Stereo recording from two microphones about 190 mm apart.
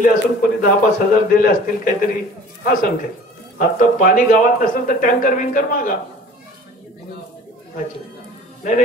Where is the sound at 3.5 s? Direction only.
45° left (ahead or behind).